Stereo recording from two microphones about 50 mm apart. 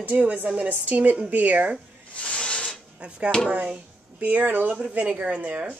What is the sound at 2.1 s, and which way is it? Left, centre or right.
Snake, left.